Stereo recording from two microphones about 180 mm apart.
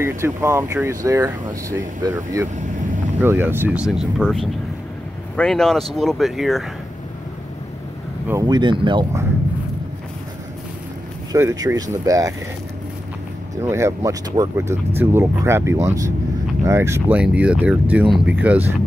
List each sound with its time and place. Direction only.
0.0 s speech: 15° right (ahead or behind)
8.3 s speech: 20° right (ahead or behind)
11.3 s speech: 15° right (ahead or behind)
13.6 s speech: 15° right (ahead or behind)